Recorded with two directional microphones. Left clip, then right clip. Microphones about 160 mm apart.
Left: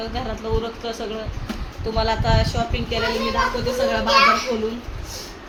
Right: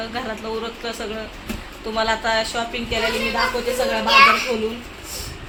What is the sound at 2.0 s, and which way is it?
Speech, centre (ahead or behind).